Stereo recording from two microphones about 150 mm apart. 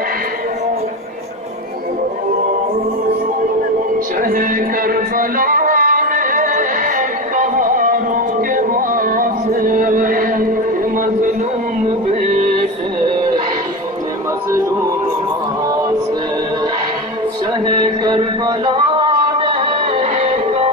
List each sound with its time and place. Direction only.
4.2 s music: 75° right (ahead or behind)
11.8 s music: 55° right (ahead or behind)